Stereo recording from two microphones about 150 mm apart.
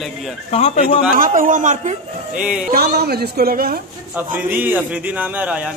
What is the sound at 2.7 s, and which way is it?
A woman's voice, 90° right.